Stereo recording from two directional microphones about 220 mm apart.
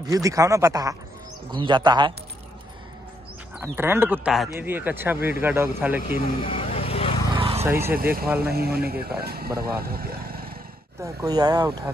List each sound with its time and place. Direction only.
0.1 s speech: 15° right (ahead or behind)
3.5 s speech: 10° right (ahead or behind)
6.4 s vehicle: 25° left (ahead or behind)
7.3 s vehicle: 25° right (ahead or behind)
7.6 s speech: 10° right (ahead or behind)
7.9 s speech: 40° right (ahead or behind)
11.0 s speech: 20° right (ahead or behind)